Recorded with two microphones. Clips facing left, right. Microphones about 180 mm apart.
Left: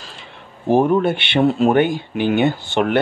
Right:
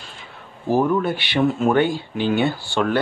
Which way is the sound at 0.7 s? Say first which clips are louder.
Left 4 dB; 20° left (ahead or behind).